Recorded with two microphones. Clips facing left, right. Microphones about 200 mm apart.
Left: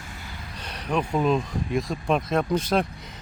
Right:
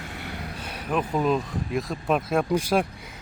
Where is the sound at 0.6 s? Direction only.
5° right (ahead or behind).